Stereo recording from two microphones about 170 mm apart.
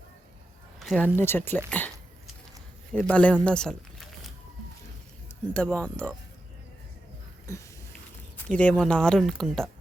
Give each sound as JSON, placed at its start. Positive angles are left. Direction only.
{"t": 0.8, "sound": "a sound", "side_deg": 0}
{"t": 1.0, "sound": "speech", "side_deg": 15}
{"t": 2.9, "sound": "speech", "side_deg": 5}
{"t": 5.5, "sound": "speech", "side_deg": 5}
{"t": 7.5, "sound": "speech", "side_deg": 15}